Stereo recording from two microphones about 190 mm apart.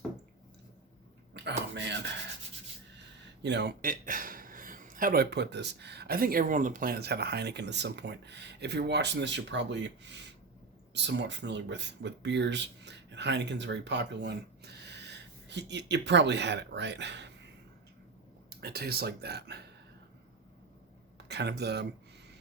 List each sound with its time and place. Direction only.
1.3 s a sound: 65° right (ahead or behind)
3.4 s a man's voice: 65° right (ahead or behind)
18.6 s a man's voice: 55° right (ahead or behind)
21.2 s speech: 65° right (ahead or behind)